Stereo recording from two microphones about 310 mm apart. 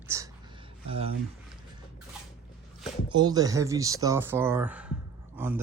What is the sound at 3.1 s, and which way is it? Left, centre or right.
Speech, centre.